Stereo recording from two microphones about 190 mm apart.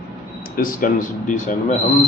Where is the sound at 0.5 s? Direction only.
45° left (ahead or behind).